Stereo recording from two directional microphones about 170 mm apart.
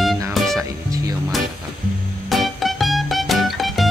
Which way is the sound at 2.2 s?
Centre (ahead or behind).